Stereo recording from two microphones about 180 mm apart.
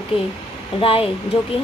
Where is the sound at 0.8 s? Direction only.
30° left (ahead or behind).